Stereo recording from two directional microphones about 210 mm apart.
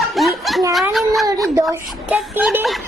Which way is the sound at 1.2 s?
15° right (ahead or behind).